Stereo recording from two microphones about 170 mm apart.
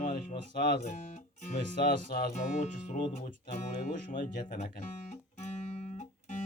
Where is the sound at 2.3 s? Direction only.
45° left (ahead or behind).